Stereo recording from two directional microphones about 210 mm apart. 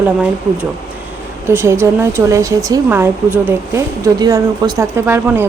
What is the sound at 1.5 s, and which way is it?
Speech, 10° right (ahead or behind).